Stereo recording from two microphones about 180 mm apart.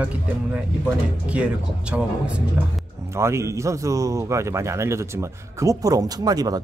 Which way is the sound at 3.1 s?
15° right (ahead or behind).